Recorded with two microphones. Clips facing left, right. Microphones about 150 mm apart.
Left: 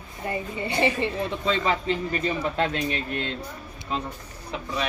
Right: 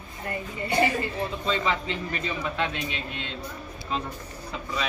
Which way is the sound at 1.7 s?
40° left (ahead or behind).